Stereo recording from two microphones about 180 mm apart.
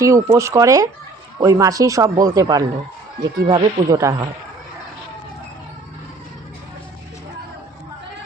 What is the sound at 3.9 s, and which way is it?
Speech, 15° right (ahead or behind).